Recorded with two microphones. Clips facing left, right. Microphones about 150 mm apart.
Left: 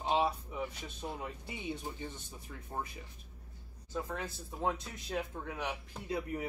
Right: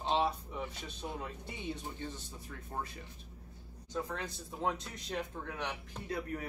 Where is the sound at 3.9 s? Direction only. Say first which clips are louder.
Even; 5° left (ahead or behind).